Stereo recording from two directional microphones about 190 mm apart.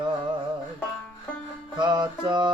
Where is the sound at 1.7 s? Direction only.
25° right (ahead or behind).